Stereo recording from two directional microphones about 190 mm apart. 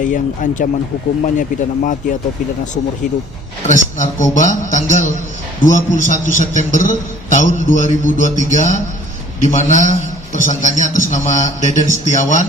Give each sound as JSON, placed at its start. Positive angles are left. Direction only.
{"t": 0.0, "sound": "speech", "side_deg": 45}
{"t": 3.7, "sound": "a man's voice", "side_deg": 40}